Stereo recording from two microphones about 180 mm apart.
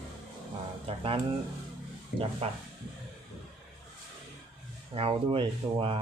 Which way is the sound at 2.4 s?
35° right (ahead or behind).